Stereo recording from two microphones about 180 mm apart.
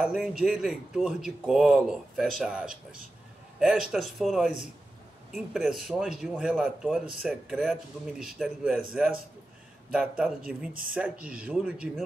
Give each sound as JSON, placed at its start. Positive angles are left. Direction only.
{"t": 0.0, "sound": "speech", "side_deg": -5}
{"t": 10.7, "sound": "speech", "side_deg": -50}
{"t": 11.0, "sound": "speech", "side_deg": -5}